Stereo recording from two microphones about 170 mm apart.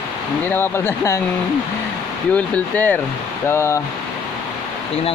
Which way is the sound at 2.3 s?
10° left (ahead or behind).